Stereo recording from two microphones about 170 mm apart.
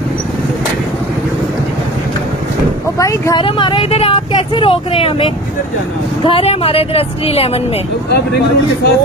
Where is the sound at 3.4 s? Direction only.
30° left (ahead or behind).